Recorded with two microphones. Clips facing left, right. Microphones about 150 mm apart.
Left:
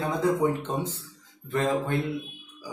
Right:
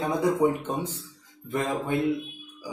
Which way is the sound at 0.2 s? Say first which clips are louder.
Right 1 dB; 10° right (ahead or behind).